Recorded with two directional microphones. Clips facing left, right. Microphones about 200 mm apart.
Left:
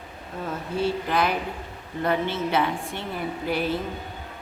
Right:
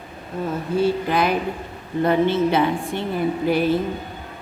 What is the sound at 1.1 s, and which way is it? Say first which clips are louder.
A woman's voice: right 4 dB; 15° right (ahead or behind).